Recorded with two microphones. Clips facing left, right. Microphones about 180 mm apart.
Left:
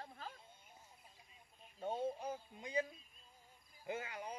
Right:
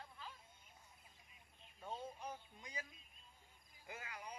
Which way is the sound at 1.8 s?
30° left (ahead or behind).